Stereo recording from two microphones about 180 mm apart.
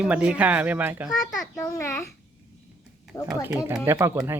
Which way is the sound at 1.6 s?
15° left (ahead or behind).